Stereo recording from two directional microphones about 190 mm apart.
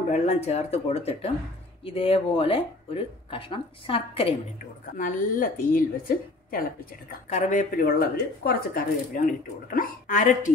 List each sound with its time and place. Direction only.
0.1 s speech: 35° left (ahead or behind)
4.9 s speech: 45° left (ahead or behind)